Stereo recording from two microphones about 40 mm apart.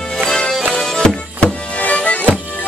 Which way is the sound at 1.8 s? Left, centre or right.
Left.